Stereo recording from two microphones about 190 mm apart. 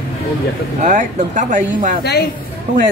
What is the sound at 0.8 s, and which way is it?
Speech, 40° right (ahead or behind).